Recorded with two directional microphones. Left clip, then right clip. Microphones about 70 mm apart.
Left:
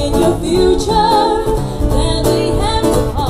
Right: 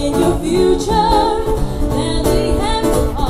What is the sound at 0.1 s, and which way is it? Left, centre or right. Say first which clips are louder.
Music: left 2 dB; left.